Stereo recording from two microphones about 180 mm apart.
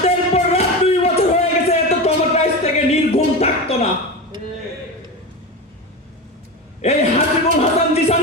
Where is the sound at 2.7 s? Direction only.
35° left (ahead or behind).